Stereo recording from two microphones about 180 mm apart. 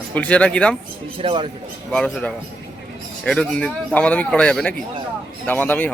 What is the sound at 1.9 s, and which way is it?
Speech, 5° left (ahead or behind).